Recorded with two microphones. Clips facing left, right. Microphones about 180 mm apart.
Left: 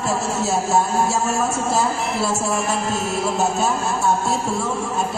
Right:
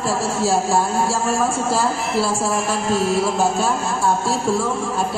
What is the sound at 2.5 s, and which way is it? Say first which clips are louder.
A man's voice: right 2 dB; centre (ahead or behind).